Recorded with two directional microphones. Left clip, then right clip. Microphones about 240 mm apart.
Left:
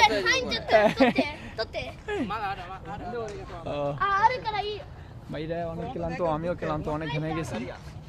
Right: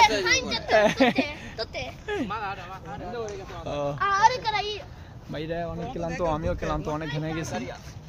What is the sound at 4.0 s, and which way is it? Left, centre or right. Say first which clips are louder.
Speech: right 2 dB; right.